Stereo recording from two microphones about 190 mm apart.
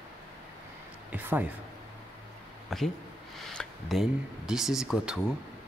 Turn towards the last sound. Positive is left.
turn(degrees=-5)  # may be behind; listen again after turning